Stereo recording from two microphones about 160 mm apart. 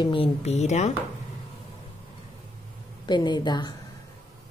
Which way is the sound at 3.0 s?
30° left (ahead or behind).